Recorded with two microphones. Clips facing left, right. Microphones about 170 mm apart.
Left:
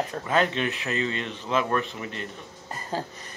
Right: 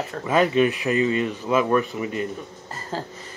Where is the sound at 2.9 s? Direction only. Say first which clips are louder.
Even; 15° left (ahead or behind).